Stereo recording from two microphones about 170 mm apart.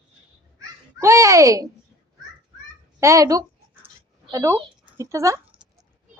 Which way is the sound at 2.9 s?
15° right (ahead or behind).